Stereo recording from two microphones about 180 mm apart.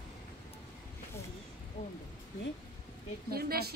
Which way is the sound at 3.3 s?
60° right (ahead or behind).